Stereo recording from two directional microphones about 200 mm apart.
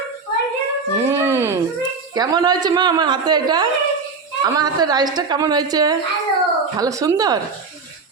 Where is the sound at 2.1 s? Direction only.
20° right (ahead or behind).